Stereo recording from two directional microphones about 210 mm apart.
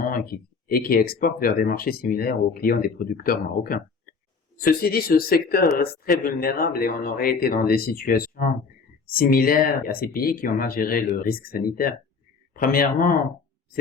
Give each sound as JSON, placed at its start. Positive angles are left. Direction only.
{"t": 0.0, "sound": "speech", "side_deg": 45}